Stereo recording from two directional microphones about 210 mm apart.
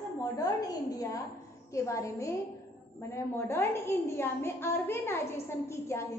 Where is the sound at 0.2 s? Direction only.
15° left (ahead or behind).